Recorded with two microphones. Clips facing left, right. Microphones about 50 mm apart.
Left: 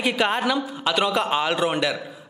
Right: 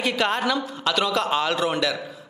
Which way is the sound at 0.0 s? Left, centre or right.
Centre.